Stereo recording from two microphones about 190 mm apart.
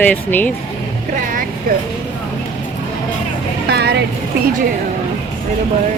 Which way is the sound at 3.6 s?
60° right (ahead or behind).